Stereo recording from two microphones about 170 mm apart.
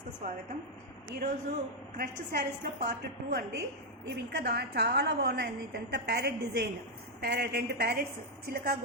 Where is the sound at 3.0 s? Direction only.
70° right (ahead or behind).